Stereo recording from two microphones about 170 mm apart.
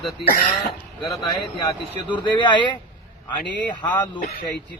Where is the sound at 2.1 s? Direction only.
25° left (ahead or behind).